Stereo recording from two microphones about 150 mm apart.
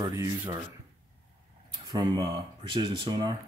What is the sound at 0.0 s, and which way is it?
Speech, 20° right (ahead or behind).